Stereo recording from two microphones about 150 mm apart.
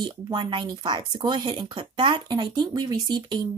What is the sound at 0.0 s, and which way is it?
Speech, 30° right (ahead or behind).